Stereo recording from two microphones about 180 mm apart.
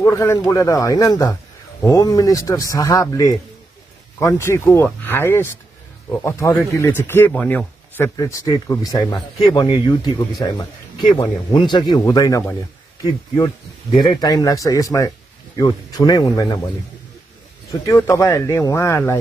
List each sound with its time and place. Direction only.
0.0 s speech: 15° left (ahead or behind)
14.0 s speech: 20° left (ahead or behind)